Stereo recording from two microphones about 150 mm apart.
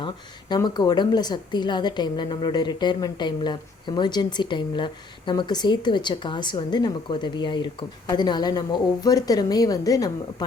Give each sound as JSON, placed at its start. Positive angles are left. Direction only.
{"t": 0.0, "sound": "a woman's voice", "side_deg": 30}